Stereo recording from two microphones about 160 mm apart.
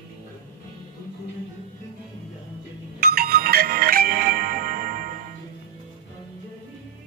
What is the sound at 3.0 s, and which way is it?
Music, 70° right (ahead or behind).